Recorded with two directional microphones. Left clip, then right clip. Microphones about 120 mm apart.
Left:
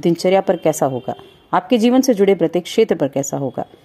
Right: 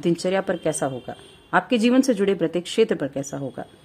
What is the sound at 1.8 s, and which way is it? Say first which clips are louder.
A woman's voice: left 6 dB; 25° left (ahead or behind).